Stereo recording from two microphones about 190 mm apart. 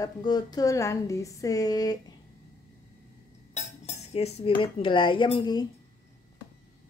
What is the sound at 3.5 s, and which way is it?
Dishes, 35° left (ahead or behind).